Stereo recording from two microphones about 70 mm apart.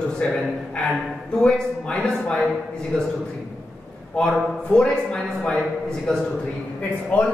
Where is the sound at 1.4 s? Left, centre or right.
Centre.